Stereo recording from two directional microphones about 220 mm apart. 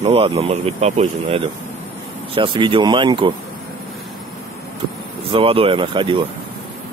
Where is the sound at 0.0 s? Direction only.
25° right (ahead or behind).